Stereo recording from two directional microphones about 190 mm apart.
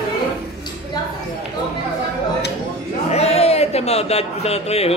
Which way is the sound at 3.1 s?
35° left (ahead or behind).